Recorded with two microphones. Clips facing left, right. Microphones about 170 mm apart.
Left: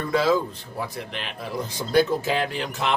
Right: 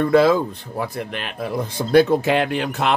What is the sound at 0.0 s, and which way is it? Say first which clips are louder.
Speech: right 6 dB; 60° right (ahead or behind).